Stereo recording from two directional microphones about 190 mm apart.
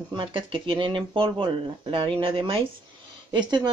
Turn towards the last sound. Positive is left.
turn(degrees=-25)  # may be behind; listen again after turning